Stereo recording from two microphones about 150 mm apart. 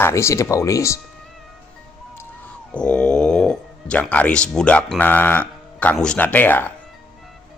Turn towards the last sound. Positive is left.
turn(degrees=10)  # may be behind; listen again after turning